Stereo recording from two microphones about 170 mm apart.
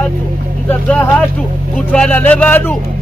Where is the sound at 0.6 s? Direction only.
10° left (ahead or behind).